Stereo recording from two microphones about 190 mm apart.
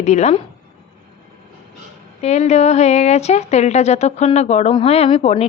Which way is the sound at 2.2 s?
35° left (ahead or behind).